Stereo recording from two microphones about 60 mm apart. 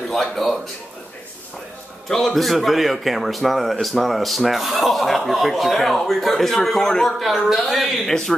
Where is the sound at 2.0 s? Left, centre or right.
Centre.